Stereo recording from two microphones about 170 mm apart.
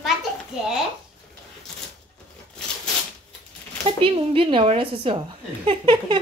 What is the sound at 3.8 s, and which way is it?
A woman's voice, 35° right (ahead or behind).